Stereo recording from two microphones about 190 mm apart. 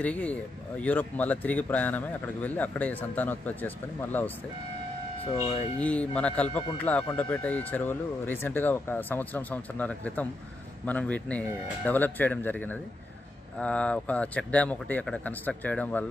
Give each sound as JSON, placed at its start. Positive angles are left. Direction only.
{"t": 0.0, "sound": "speech", "side_deg": 5}
{"t": 5.8, "sound": "speech", "side_deg": 5}